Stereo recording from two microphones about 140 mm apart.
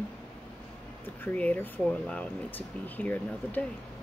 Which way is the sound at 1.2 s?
10° left (ahead or behind).